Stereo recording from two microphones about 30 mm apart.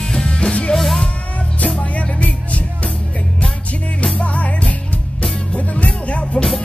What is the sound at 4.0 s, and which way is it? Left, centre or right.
Music, left.